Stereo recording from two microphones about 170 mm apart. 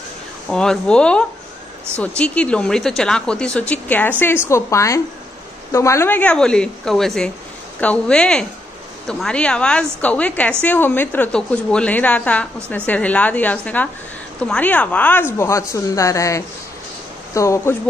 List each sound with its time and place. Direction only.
0.5 s a woman's voice: 5° left (ahead or behind)